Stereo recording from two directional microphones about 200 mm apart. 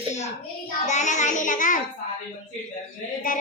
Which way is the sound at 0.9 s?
35° left (ahead or behind).